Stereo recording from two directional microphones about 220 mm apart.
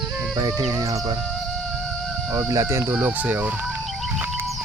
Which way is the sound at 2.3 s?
10° right (ahead or behind).